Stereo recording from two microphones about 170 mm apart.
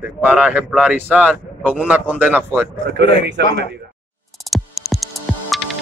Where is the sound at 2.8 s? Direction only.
75° right (ahead or behind).